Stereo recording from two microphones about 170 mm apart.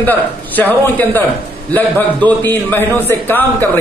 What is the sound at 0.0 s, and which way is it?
Speech, 10° left (ahead or behind).